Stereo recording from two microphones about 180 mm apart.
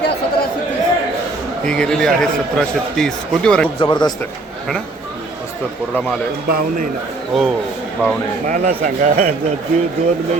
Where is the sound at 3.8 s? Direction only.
25° left (ahead or behind).